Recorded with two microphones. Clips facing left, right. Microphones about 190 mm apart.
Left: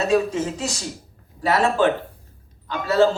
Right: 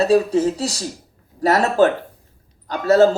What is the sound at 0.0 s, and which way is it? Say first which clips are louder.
A man's voice: right 5 dB; 35° right (ahead or behind).